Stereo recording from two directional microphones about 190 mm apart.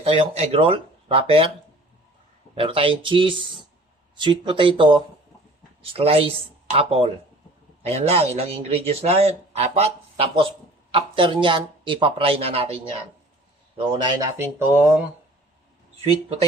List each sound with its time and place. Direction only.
0.0 s speech: 30° right (ahead or behind)
2.6 s speech: 30° right (ahead or behind)
13.7 s speech: 25° right (ahead or behind)
14.3 s speech: 10° right (ahead or behind)